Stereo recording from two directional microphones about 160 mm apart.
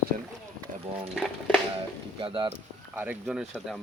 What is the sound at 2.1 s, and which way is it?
Speech, 30° right (ahead or behind).